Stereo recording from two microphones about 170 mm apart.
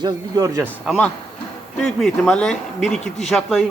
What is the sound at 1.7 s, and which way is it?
Speech, centre (ahead or behind).